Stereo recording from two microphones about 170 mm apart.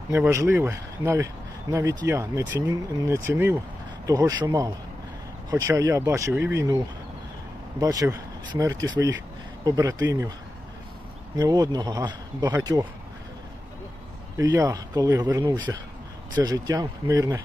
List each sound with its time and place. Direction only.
0.1 s a man's voice: 15° right (ahead or behind)
7.8 s a man's voice: 20° right (ahead or behind)
11.3 s a man's voice: 20° right (ahead or behind)
14.3 s a man's voice: 20° right (ahead or behind)